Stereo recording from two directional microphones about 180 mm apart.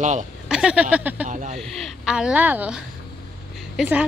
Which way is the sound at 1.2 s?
40° right (ahead or behind).